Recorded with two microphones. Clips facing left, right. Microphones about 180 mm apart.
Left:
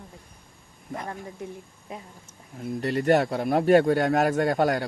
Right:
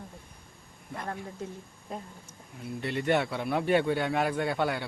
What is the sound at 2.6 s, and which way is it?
Speech, 40° left (ahead or behind).